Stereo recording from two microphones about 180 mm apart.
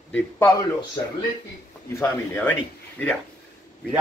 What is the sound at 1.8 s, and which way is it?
Speech, 15° left (ahead or behind).